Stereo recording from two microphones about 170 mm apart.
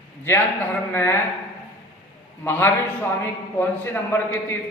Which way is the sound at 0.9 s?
15° left (ahead or behind).